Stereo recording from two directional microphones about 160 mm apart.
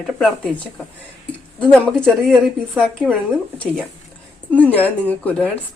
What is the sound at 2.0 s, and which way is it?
Speech, centre (ahead or behind).